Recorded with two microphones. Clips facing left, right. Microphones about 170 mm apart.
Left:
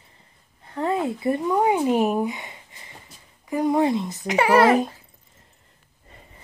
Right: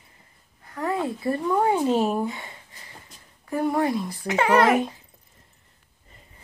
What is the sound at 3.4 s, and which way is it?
A child's voice, 15° left (ahead or behind).